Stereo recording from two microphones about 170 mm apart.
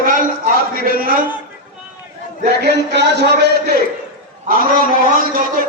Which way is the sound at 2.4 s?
75° right (ahead or behind).